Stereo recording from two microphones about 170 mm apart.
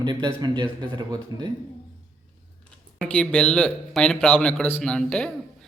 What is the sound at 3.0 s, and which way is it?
A man's voice, 5° left (ahead or behind).